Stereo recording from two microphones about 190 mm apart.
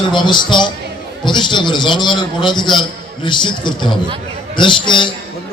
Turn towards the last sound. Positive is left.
turn(degrees=25)  # may be behind; listen again after turning